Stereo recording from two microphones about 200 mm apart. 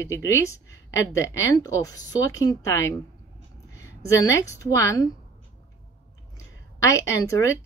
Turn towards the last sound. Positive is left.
turn(degrees=15)  # may be behind; listen again after turning